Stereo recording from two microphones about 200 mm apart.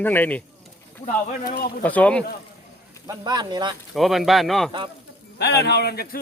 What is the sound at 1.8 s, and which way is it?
Speech, 5° left (ahead or behind).